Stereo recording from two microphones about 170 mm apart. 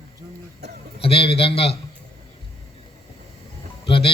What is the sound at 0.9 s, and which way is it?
Speech, 35° left (ahead or behind).